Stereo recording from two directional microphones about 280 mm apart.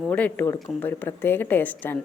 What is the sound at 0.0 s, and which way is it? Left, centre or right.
Speech, centre.